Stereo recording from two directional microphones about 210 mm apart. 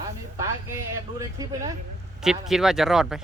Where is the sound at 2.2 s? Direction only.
Centre (ahead or behind).